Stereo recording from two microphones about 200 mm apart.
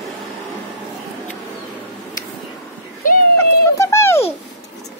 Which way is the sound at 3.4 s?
15° left (ahead or behind).